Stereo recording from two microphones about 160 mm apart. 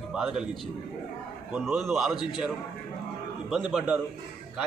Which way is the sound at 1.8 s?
Centre (ahead or behind).